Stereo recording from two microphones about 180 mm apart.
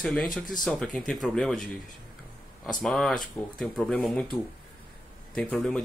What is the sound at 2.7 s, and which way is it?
Speech, centre (ahead or behind).